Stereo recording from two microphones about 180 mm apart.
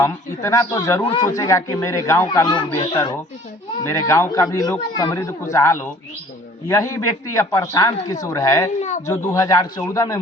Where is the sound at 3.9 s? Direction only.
15° left (ahead or behind).